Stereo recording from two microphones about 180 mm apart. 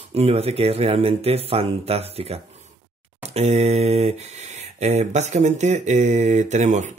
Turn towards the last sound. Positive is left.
turn(degrees=-40)  # may be behind; listen again after turning